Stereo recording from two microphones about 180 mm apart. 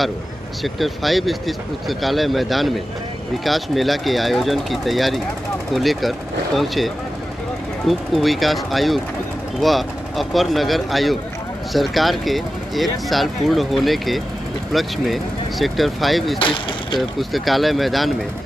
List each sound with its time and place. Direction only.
0.7 s speech: centre (ahead or behind)
16.3 s speech: 30° left (ahead or behind)
17.2 s speech: centre (ahead or behind)